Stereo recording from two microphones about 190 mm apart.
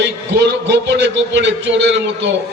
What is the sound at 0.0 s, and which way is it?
A man's voice, 65° right (ahead or behind).